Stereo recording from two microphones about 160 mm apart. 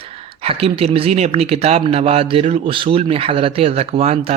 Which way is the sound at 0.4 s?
40° right (ahead or behind).